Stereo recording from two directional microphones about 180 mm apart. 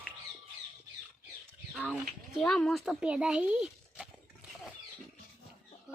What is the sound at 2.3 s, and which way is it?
A child's voice, centre (ahead or behind).